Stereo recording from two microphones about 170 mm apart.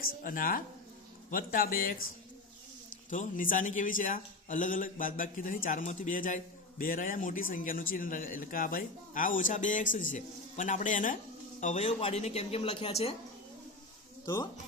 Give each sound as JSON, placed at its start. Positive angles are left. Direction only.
{"t": 0.0, "sound": "speech", "side_deg": 55}
{"t": 3.1, "sound": "a man's voice", "side_deg": 50}